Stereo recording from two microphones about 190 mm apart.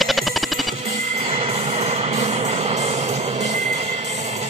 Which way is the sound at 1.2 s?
30° right (ahead or behind).